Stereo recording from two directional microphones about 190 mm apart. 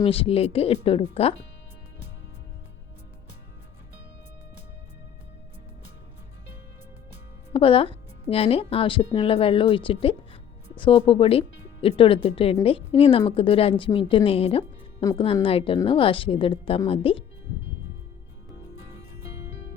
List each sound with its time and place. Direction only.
0.0 s speech: 30° left (ahead or behind)
7.5 s a woman's voice: 30° left (ahead or behind)